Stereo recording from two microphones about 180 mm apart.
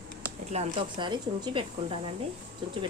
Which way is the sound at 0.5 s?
35° right (ahead or behind).